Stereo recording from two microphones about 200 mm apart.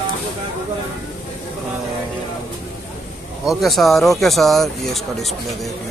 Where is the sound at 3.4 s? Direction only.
Centre (ahead or behind).